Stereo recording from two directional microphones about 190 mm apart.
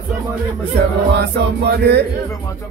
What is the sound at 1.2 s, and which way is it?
Music, 60° right (ahead or behind).